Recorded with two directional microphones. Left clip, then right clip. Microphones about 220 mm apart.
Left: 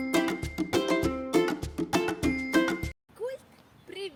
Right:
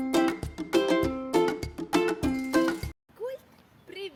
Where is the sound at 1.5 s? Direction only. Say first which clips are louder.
Right 1 dB; centre (ahead or behind).